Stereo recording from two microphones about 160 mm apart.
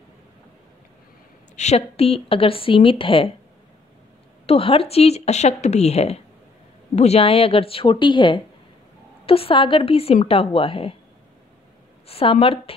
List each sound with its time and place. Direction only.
1.6 s speech: 40° left (ahead or behind)
4.5 s speech: 35° left (ahead or behind)
12.1 s speech: 35° left (ahead or behind)